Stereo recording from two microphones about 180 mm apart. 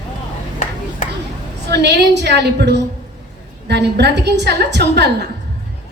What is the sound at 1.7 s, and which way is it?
A woman's voice, 70° right (ahead or behind).